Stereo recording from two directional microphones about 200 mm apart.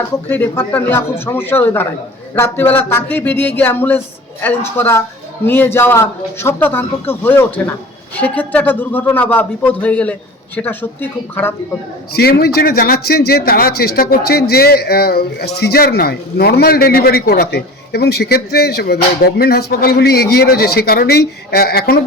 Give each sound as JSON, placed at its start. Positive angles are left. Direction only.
{"t": 0.3, "sound": "speech", "side_deg": 10}
{"t": 12.1, "sound": "speech", "side_deg": 50}